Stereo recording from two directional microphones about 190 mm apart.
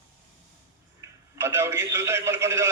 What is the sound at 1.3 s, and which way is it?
Telephone, 15° right (ahead or behind).